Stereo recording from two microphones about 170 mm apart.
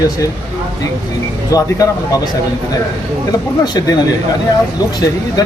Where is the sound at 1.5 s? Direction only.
20° left (ahead or behind).